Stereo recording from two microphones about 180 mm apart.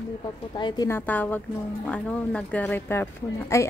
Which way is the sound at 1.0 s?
10° left (ahead or behind).